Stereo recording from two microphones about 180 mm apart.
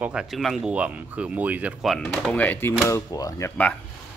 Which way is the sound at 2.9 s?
20° left (ahead or behind).